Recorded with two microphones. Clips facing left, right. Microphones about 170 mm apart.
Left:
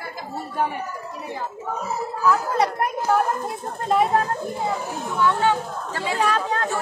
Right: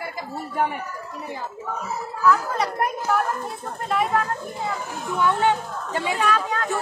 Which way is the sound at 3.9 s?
35° left (ahead or behind).